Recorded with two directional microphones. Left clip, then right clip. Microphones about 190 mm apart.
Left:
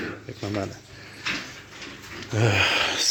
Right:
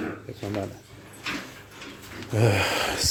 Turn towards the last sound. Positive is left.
turn(degrees=-15)  # may be behind; listen again after turning